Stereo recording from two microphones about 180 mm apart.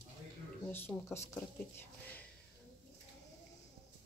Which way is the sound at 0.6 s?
10° left (ahead or behind).